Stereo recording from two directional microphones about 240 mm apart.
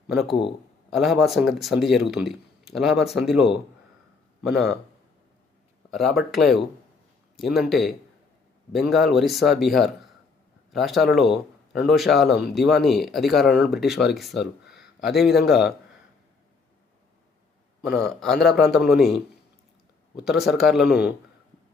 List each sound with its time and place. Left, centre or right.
0.3 s speech: left
0.9 s speech: centre
5.9 s speech: centre
17.8 s speech: centre
20.2 s speech: centre